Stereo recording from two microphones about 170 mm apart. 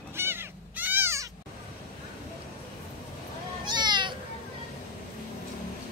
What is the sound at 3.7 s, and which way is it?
Cat, 25° right (ahead or behind).